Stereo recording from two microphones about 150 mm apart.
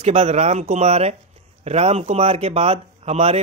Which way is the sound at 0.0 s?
45° right (ahead or behind).